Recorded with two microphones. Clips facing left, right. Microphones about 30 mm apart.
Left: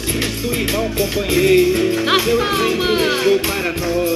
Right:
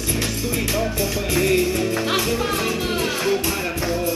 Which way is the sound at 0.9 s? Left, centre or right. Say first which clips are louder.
Left 5 dB; left.